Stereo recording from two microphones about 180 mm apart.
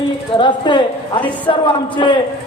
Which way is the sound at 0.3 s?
25° left (ahead or behind).